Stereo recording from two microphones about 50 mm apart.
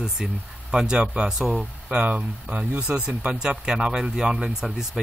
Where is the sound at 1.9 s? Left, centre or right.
Right.